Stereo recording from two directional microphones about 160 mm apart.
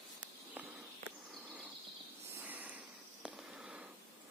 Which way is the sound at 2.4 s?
10° right (ahead or behind).